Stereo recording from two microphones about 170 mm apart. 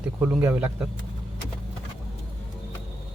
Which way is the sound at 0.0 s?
5° right (ahead or behind).